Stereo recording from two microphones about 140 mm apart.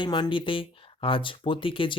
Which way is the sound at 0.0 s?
35° left (ahead or behind).